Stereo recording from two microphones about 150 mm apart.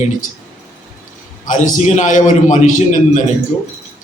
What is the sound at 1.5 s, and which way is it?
A man's voice, 55° left (ahead or behind).